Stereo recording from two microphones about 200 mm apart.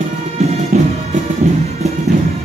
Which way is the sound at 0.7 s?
40° right (ahead or behind).